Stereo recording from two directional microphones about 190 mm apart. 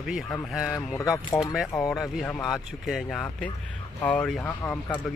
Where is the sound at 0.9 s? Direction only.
15° left (ahead or behind).